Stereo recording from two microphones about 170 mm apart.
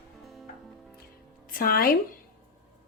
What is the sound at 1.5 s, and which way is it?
Speech, 55° left (ahead or behind).